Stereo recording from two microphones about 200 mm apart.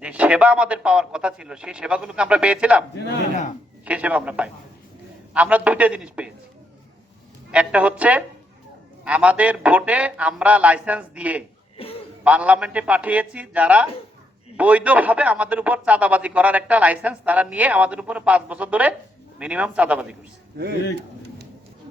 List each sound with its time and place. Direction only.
0.0 s a man's voice: 5° right (ahead or behind)
3.8 s speech: 5° right (ahead or behind)
7.5 s speech: 5° right (ahead or behind)
11.8 s a sound: 30° left (ahead or behind)
12.2 s speech: 5° right (ahead or behind)